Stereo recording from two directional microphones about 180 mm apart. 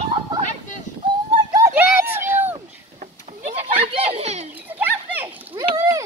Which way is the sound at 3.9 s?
35° right (ahead or behind).